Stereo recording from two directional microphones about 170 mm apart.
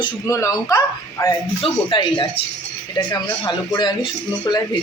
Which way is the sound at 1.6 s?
30° left (ahead or behind).